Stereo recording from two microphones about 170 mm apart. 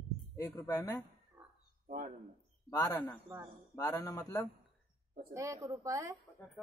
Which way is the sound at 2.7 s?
20° left (ahead or behind).